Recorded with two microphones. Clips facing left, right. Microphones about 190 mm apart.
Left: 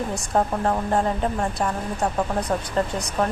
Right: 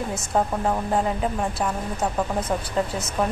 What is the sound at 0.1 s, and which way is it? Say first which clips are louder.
A woman's voice: even; centre (ahead or behind).